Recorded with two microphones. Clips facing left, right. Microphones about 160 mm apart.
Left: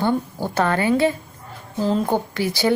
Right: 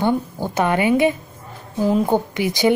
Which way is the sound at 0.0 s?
15° right (ahead or behind).